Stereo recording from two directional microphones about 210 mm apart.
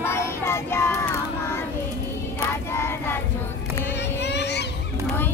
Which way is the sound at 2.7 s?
10° left (ahead or behind).